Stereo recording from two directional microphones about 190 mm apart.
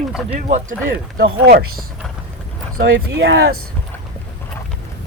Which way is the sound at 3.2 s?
90° right.